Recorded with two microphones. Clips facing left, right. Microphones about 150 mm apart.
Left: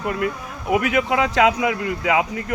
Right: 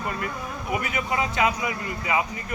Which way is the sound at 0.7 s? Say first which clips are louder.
Left 9 dB; 90° left.